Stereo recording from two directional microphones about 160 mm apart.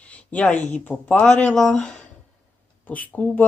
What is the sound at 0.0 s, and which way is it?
Speech, 10° left (ahead or behind).